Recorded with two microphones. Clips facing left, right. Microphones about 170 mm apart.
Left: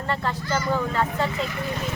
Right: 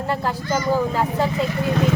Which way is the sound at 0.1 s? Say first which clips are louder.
Right 3 dB; 10° right (ahead or behind).